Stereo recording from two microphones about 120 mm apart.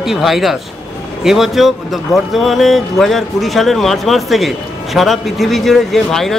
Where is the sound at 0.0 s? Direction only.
Centre (ahead or behind).